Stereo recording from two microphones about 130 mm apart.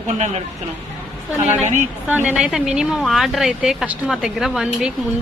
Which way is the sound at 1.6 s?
70° right (ahead or behind).